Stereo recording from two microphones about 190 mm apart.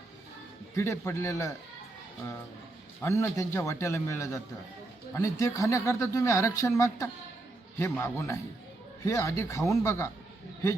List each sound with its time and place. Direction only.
0.8 s speech: 15° left (ahead or behind)
3.0 s speech: 15° left (ahead or behind)